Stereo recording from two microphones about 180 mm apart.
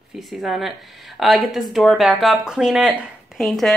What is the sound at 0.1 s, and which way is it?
Speech, centre (ahead or behind).